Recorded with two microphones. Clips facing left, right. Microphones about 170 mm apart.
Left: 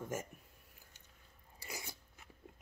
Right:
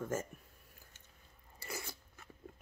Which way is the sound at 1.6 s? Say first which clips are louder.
Right 3 dB; 15° left (ahead or behind).